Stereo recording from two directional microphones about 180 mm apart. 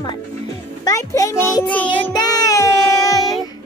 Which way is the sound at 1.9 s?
20° left (ahead or behind).